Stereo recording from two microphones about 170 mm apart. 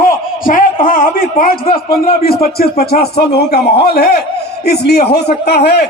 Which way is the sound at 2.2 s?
60° left (ahead or behind).